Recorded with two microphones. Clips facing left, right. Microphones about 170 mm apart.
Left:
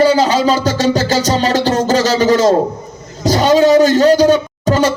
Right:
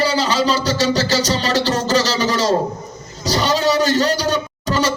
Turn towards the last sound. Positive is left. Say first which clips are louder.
# left 6 dB
turn(degrees=50)  # may be behind; listen again after turning